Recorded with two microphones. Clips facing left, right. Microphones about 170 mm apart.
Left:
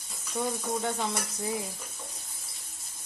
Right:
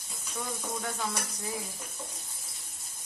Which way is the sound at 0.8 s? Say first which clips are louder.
Left 4 dB; 25° left (ahead or behind).